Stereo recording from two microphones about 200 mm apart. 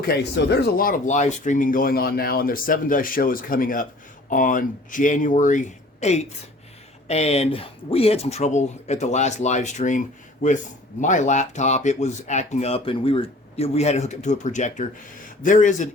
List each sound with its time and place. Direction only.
0.1 s speech: 55° left (ahead or behind); by 10.0 s 40° left (ahead or behind)
11.0 s speech: 40° left (ahead or behind)